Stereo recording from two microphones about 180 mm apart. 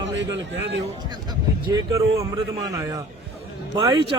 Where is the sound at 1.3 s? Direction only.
20° right (ahead or behind).